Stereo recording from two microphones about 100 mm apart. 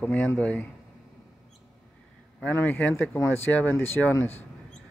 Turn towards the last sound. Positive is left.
turn(degrees=20)  # may be behind; listen again after turning